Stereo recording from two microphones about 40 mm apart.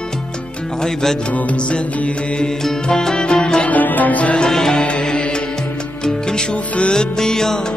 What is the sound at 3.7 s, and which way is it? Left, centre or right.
Music, left.